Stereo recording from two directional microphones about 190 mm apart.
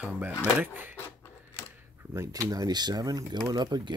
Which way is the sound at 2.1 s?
15° right (ahead or behind).